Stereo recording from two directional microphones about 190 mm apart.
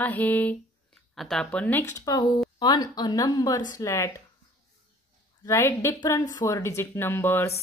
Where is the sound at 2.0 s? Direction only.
20° left (ahead or behind).